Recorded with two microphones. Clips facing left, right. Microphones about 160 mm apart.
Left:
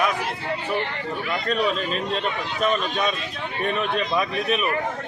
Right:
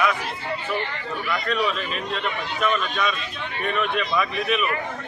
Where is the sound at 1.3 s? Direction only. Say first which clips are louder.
Left 1 dB; 30° left (ahead or behind).